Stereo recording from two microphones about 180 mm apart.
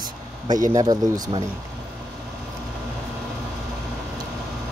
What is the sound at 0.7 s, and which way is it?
Speech, 20° right (ahead or behind).